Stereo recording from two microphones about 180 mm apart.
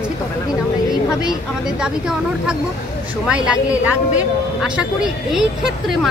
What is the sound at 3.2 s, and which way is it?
Speech, 5° right (ahead or behind).